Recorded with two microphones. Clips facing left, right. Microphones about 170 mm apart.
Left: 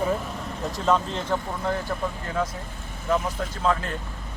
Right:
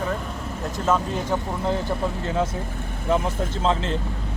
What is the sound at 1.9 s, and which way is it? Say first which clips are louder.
Speech: right 4 dB; 25° right (ahead or behind).